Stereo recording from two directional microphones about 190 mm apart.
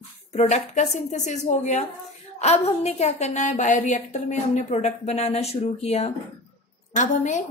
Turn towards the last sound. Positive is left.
turn(degrees=40)  # may be behind; listen again after turning